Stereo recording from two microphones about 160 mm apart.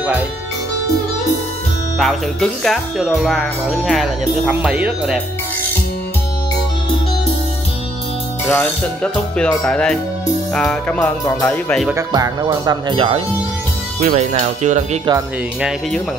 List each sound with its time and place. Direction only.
2.0 s speech: centre (ahead or behind)
8.5 s music: 10° left (ahead or behind)
10.5 s speech: 5° left (ahead or behind)
12.1 s speech: 25° right (ahead or behind)
13.9 s speech: 45° right (ahead or behind)